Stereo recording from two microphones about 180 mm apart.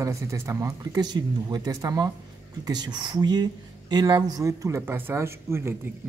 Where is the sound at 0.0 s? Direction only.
15° right (ahead or behind).